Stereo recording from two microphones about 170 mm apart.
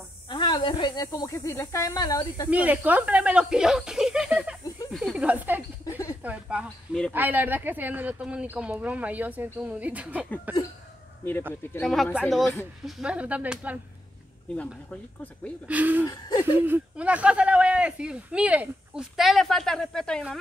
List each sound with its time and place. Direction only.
0.3 s speech: 25° left (ahead or behind)
2.5 s speech: 10° right (ahead or behind)
11.7 s speech: centre (ahead or behind)
15.6 s speech: 10° right (ahead or behind)
16.1 s speech: 25° left (ahead or behind)
16.5 s speech: 10° right (ahead or behind)